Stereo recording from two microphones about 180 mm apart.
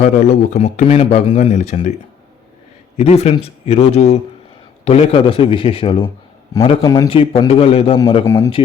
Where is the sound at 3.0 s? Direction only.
35° left (ahead or behind).